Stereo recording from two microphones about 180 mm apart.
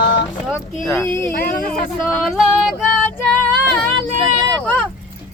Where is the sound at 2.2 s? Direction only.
Centre (ahead or behind).